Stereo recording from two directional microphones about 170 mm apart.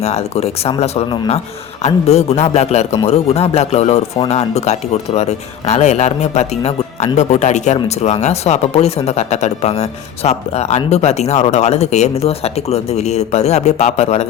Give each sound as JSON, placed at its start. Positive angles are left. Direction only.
{"t": 0.0, "sound": "a man's voice", "side_deg": 40}